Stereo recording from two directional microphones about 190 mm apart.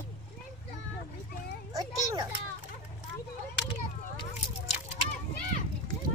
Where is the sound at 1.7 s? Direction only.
20° right (ahead or behind).